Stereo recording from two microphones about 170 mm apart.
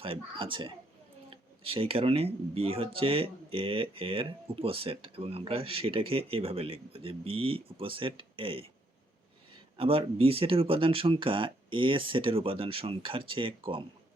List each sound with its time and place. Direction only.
0.0 s speech: 30° right (ahead or behind)
9.7 s speech: 35° right (ahead or behind)